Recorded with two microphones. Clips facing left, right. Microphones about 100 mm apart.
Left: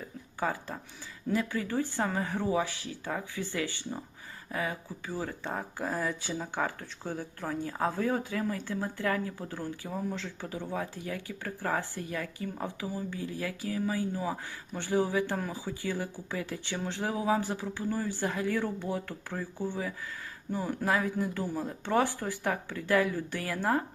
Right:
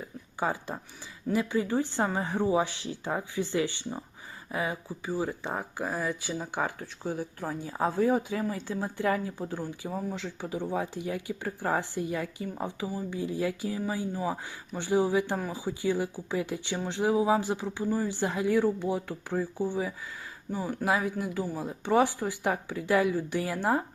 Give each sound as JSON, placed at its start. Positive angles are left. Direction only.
{"t": 0.3, "sound": "speech", "side_deg": -20}
{"t": 20.5, "sound": "speech", "side_deg": -5}